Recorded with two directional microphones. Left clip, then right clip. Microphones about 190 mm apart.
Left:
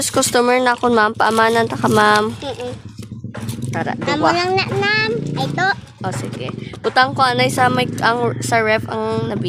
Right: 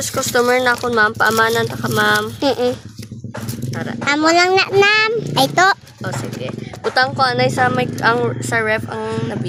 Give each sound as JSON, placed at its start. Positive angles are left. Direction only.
{"t": 0.0, "sound": "speech", "side_deg": 55}
{"t": 3.7, "sound": "speech", "side_deg": 50}
{"t": 4.0, "sound": "a child's voice", "side_deg": -55}
{"t": 6.0, "sound": "speech", "side_deg": 55}